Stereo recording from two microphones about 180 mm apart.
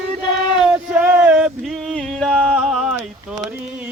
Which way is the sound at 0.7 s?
10° right (ahead or behind).